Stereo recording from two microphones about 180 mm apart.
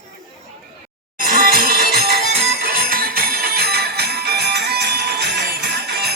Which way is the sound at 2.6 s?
55° right (ahead or behind).